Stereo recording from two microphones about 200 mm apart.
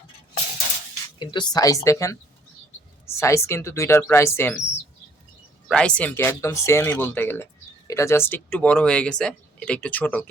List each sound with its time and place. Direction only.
1.2 s speech: 20° left (ahead or behind)
3.2 s speech: 15° left (ahead or behind)
5.6 s speech: 5° left (ahead or behind)